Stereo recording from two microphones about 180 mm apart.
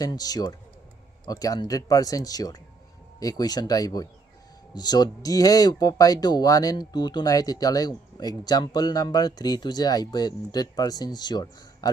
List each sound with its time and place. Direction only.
0.0 s speech: 20° left (ahead or behind)